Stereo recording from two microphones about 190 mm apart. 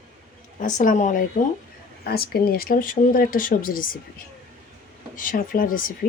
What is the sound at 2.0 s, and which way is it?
Speech, 55° left (ahead or behind).